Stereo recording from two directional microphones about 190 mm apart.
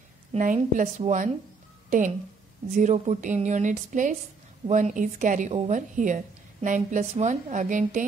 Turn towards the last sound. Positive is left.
turn(degrees=-40)  # may be behind; listen again after turning